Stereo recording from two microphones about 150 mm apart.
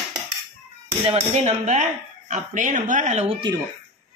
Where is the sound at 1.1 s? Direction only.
50° right (ahead or behind).